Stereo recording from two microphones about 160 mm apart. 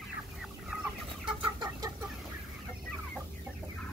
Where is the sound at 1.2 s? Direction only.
30° right (ahead or behind).